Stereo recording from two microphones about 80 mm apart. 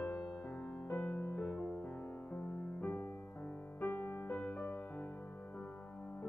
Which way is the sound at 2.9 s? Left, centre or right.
Left.